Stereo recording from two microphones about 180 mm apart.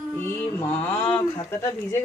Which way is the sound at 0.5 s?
15° left (ahead or behind).